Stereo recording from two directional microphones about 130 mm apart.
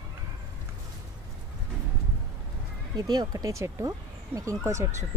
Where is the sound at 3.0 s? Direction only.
30° right (ahead or behind).